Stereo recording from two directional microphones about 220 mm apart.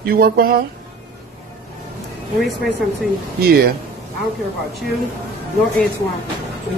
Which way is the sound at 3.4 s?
45° right (ahead or behind).